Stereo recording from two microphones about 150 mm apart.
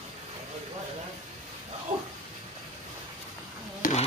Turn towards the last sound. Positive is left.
turn(degrees=65)  # may be behind; listen again after turning